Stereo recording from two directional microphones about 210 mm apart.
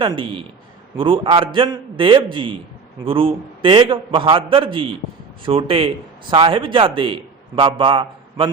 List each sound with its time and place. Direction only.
0.0 s a man's voice: 25° right (ahead or behind)